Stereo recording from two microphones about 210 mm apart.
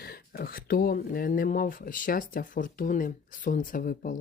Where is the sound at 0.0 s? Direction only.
45° left (ahead or behind).